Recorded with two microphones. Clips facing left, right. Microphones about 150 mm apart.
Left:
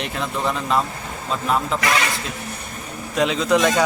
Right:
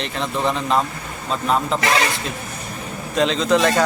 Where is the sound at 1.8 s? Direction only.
30° right (ahead or behind).